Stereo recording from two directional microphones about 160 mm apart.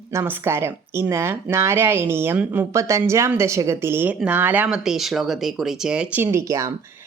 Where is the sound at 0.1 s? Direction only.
15° right (ahead or behind).